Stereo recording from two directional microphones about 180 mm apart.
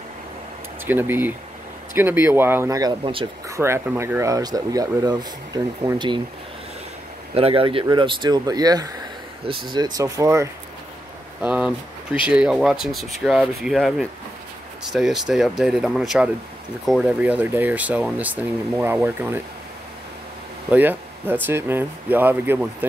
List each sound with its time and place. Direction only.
0.8 s speech: 10° right (ahead or behind); by 3.3 s 30° right (ahead or behind)
3.4 s speech: 15° right (ahead or behind)
7.3 s speech: 30° right (ahead or behind)
11.4 s speech: 5° right (ahead or behind)
20.7 s speech: 10° right (ahead or behind)